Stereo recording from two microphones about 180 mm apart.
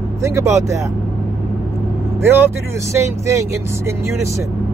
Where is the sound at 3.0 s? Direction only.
10° right (ahead or behind).